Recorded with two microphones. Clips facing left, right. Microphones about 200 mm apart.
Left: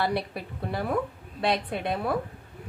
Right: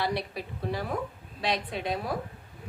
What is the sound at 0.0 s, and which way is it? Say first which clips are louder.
A woman's voice: left 3 dB; 55° left (ahead or behind).